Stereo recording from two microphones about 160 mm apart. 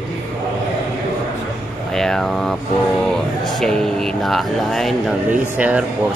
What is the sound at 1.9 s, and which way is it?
Speech, 5° left (ahead or behind).